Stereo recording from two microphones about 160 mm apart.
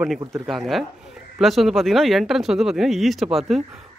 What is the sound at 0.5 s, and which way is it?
Speech, centre (ahead or behind).